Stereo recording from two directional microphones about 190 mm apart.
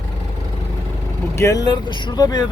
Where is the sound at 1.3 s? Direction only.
15° left (ahead or behind).